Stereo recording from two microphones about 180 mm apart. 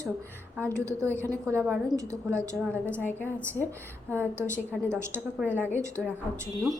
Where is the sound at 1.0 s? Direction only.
10° left (ahead or behind).